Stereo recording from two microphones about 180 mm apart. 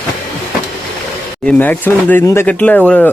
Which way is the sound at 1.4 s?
10° left (ahead or behind).